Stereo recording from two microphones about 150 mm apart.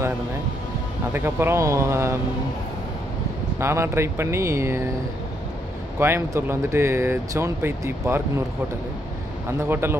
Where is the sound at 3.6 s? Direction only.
15° right (ahead or behind).